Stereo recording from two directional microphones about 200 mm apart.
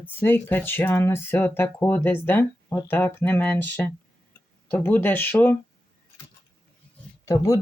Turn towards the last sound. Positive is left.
turn(degrees=15)  # may be behind; listen again after turning